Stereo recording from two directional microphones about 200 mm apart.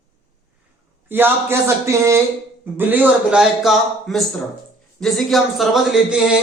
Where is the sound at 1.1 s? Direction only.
10° right (ahead or behind).